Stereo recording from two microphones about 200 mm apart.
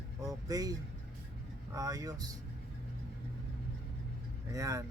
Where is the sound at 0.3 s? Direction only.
15° right (ahead or behind).